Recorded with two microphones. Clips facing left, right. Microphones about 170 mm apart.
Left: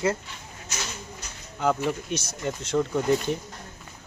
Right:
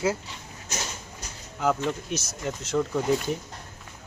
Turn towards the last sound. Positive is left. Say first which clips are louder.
# left 1 dB
turn(degrees=0)  # may be behind; listen again after turning